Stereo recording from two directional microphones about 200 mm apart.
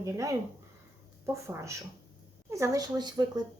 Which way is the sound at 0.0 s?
15° right (ahead or behind).